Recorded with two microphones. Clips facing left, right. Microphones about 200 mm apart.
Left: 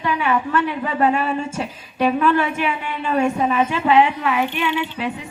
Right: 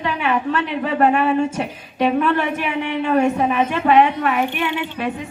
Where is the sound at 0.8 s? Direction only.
60° right (ahead or behind).